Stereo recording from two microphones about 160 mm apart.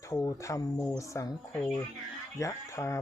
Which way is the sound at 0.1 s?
20° left (ahead or behind).